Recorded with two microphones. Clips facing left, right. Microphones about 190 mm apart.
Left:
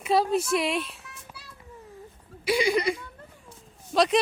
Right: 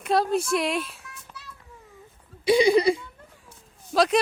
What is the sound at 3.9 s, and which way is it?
Speech, centre (ahead or behind).